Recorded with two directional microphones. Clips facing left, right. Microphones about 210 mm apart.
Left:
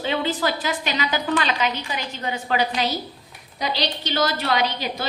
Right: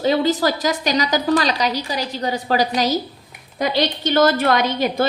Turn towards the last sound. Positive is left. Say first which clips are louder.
# right 5 dB
turn(degrees=-50)  # may be behind; listen again after turning